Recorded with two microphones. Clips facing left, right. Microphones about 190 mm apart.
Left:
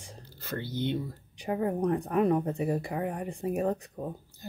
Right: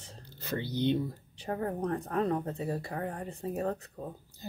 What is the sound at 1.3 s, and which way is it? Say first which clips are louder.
Speech: left 4 dB; 10° left (ahead or behind).